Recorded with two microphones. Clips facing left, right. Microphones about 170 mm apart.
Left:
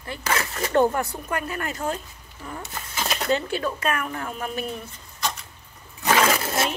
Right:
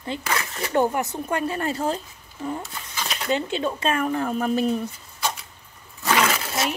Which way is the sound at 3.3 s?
20° right (ahead or behind).